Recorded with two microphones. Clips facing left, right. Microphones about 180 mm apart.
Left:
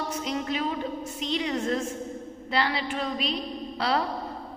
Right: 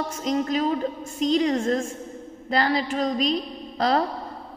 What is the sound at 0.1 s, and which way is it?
A woman's voice, 40° right (ahead or behind).